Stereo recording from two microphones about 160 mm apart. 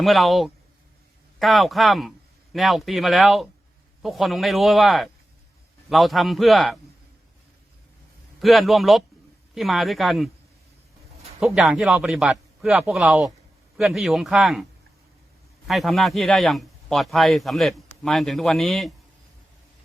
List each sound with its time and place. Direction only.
0.0 s a man's voice: centre (ahead or behind)
8.4 s a man's voice: centre (ahead or behind)
11.5 s a man's voice: centre (ahead or behind)